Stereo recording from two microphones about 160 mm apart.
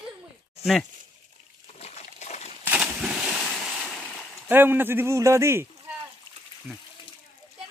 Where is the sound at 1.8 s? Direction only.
45° left (ahead or behind).